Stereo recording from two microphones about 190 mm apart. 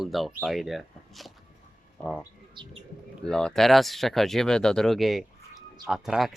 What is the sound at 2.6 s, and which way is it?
Speech, 25° right (ahead or behind).